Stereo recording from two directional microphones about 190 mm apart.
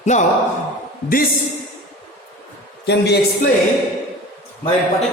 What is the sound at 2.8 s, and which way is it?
Speech, 65° left (ahead or behind).